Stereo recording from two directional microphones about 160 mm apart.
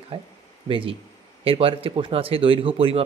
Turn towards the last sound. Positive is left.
turn(degrees=-35)  # may be behind; listen again after turning